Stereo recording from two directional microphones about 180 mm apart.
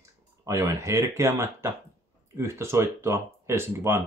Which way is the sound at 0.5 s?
15° right (ahead or behind).